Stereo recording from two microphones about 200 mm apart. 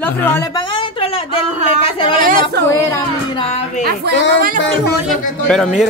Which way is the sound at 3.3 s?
30° left (ahead or behind).